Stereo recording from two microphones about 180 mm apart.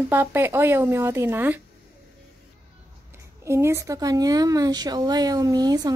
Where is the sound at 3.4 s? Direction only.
15° right (ahead or behind).